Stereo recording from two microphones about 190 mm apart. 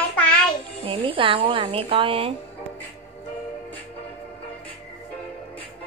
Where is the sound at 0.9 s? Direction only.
30° right (ahead or behind).